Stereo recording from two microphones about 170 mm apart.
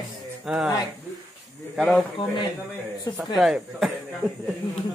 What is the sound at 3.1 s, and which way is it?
Speech, centre (ahead or behind).